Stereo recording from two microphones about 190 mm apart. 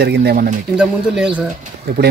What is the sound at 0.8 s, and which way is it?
Speech, 5° right (ahead or behind).